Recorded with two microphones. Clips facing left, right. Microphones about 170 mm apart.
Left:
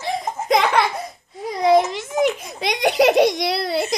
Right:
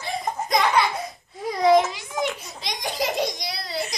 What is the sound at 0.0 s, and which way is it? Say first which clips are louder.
Laughter: left 3 dB; 80° left.